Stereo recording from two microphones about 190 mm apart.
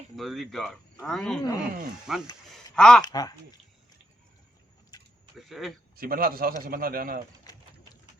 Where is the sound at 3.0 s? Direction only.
20° left (ahead or behind).